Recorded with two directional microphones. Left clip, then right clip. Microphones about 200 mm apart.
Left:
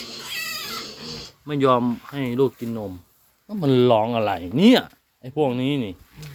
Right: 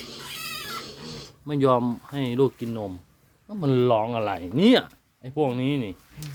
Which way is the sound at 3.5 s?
20° left (ahead or behind).